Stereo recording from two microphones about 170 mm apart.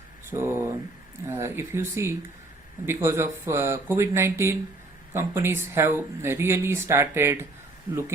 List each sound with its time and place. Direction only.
0.3 s speech: 15° right (ahead or behind)